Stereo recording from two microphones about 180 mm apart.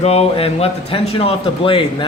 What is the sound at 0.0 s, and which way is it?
Speech, 35° left (ahead or behind).